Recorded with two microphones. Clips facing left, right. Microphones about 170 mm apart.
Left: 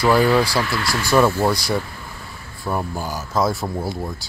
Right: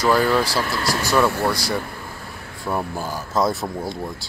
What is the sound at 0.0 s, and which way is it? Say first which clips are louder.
Speech: left 2 dB; 10° left (ahead or behind).